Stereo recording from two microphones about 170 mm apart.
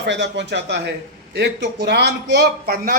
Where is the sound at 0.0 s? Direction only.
90° right.